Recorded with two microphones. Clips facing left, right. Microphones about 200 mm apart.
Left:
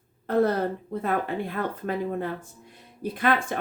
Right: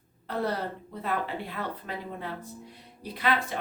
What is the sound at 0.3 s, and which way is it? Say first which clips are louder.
Speech: left 8 dB; 50° left (ahead or behind).